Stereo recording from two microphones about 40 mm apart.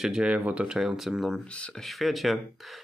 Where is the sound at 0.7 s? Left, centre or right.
Centre.